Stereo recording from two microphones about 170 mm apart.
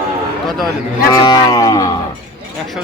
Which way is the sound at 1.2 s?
20° left (ahead or behind).